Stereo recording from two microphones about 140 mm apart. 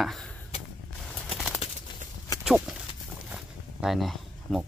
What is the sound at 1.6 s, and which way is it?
Horse, 45° left (ahead or behind).